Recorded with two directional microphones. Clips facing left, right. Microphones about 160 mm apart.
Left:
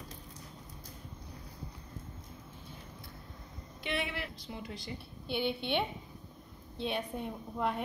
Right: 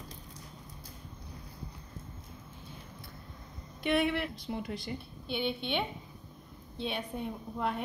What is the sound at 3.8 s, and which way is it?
Speech, 55° right (ahead or behind).